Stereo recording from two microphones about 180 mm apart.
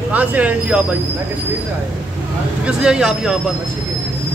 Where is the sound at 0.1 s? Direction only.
10° right (ahead or behind).